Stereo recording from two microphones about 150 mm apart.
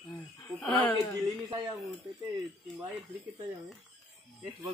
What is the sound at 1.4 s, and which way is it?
Speech, 30° right (ahead or behind).